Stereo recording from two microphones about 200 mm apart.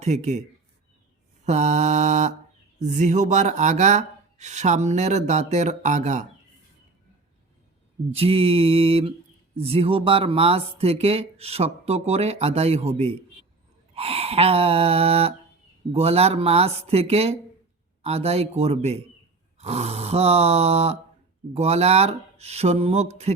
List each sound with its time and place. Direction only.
0.0 s speech: 35° right (ahead or behind)
1.5 s speech: 35° right (ahead or behind)
8.1 s a sound: 30° right (ahead or behind)
9.6 s speech: 30° right (ahead or behind)
13.9 s a sound: 30° right (ahead or behind)
15.9 s speech: 30° right (ahead or behind)